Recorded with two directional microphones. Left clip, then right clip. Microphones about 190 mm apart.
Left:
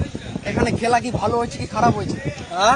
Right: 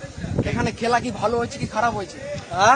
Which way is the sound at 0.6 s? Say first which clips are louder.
Left 3 dB; 20° left (ahead or behind).